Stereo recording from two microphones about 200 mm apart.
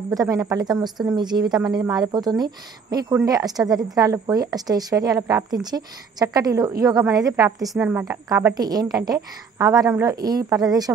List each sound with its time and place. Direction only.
0.1 s a woman's voice: 20° right (ahead or behind)